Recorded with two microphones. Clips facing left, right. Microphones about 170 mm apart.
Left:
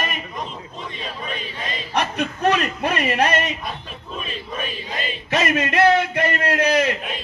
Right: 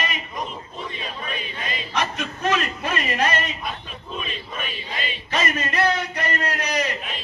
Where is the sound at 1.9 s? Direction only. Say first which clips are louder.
Left 5 dB; 60° left (ahead or behind).